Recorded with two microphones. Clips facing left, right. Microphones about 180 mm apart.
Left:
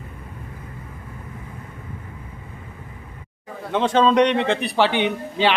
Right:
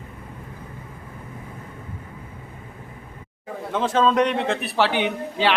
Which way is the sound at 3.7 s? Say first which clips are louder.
Left 3 dB; centre (ahead or behind).